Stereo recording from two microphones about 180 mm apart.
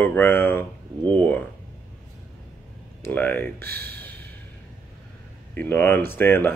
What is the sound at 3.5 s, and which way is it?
Speech, 60° right (ahead or behind).